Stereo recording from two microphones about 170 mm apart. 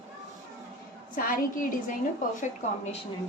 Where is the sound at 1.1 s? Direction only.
55° left (ahead or behind).